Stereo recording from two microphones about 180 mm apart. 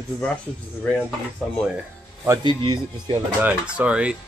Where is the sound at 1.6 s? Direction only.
10° right (ahead or behind).